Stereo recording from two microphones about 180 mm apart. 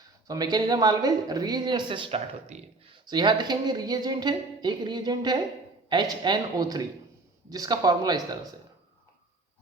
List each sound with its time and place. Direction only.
0.3 s speech: 20° right (ahead or behind)
3.1 s speech: 25° right (ahead or behind)